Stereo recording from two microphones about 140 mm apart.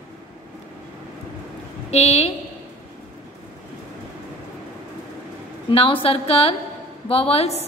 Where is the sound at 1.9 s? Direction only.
50° left (ahead or behind).